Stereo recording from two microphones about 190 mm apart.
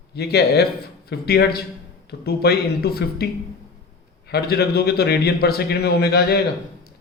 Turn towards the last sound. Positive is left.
turn(degrees=60)  # may be behind; listen again after turning